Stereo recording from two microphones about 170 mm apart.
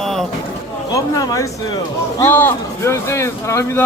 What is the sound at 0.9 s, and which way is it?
Speech, 20° left (ahead or behind).